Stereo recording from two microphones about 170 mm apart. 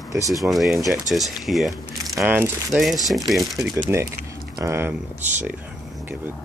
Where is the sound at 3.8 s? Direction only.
15° right (ahead or behind).